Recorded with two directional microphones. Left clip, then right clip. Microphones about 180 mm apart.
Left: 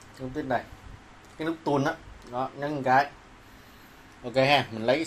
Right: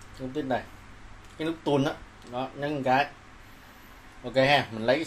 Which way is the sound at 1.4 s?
5° right (ahead or behind).